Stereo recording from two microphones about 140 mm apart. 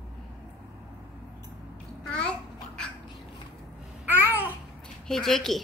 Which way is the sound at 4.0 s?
15° right (ahead or behind).